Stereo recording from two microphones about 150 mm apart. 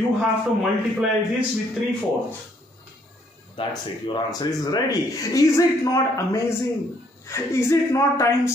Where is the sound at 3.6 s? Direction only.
30° left (ahead or behind).